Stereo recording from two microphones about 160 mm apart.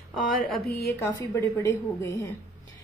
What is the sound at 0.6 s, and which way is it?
Speech, 75° left (ahead or behind).